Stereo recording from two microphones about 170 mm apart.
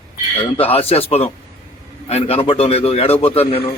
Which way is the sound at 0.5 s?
35° left (ahead or behind).